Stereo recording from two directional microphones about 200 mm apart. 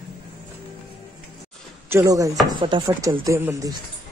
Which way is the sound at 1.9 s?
15° right (ahead or behind).